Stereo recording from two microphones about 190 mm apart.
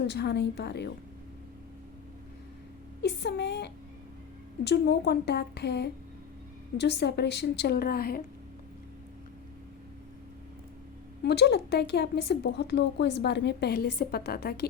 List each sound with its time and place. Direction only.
0.1 s speech: 60° left (ahead or behind)
3.0 s speech: 60° left (ahead or behind)
11.2 s speech: 60° left (ahead or behind)